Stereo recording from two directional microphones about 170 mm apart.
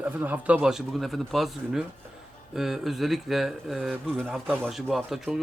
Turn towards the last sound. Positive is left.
turn(degrees=0)  # may be behind; listen again after turning